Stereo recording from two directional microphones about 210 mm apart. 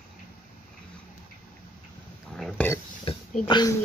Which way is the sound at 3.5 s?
20° left (ahead or behind).